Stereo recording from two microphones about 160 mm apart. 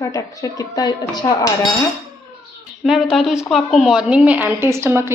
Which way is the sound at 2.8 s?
Centre (ahead or behind).